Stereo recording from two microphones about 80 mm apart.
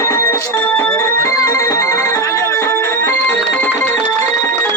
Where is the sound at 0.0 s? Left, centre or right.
Left.